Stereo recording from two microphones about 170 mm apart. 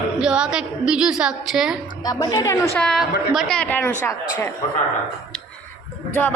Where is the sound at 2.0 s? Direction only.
20° left (ahead or behind).